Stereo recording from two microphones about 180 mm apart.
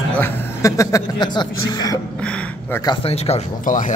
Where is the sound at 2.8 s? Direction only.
35° left (ahead or behind).